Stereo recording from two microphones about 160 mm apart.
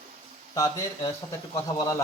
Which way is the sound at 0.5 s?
20° left (ahead or behind).